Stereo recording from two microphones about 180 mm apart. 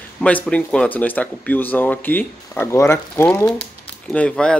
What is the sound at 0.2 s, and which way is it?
Speech, 5° left (ahead or behind).